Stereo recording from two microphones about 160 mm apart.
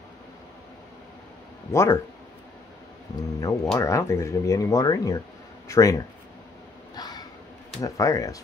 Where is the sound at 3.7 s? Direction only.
20° left (ahead or behind).